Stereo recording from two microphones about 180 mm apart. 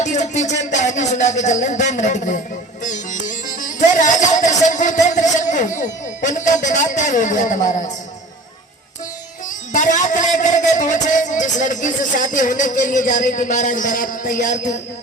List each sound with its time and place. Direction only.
0.0 s speech: 40° left (ahead or behind)
2.8 s music: 45° left (ahead or behind)
6.9 s speech: 40° left (ahead or behind)
9.5 s a man's voice: 45° left (ahead or behind)